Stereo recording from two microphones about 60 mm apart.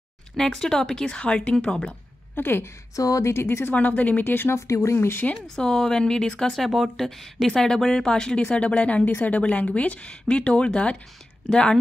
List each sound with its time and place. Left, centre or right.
0.4 s speech: centre
2.3 s a woman's voice: left
3.0 s speech: left
3.3 s speech: left
3.7 s a woman's voice: left
4.6 s speech: left
4.9 s a woman's voice: left
5.6 s a woman's voice: centre